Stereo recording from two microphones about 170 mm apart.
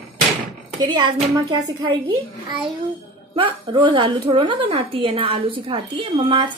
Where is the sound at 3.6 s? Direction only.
25° right (ahead or behind).